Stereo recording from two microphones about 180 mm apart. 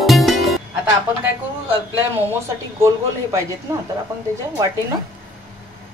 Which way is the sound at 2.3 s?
15° right (ahead or behind).